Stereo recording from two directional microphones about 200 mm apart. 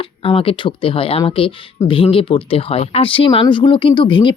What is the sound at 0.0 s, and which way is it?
Speech, 25° left (ahead or behind).